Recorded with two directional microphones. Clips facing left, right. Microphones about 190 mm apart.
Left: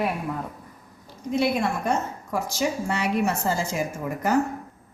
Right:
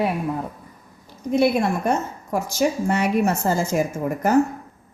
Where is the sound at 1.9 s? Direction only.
45° right (ahead or behind).